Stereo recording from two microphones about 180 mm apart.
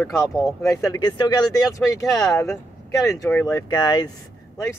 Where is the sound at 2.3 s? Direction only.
15° left (ahead or behind).